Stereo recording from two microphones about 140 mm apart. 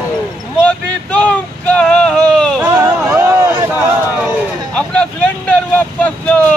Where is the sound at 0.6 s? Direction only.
10° left (ahead or behind).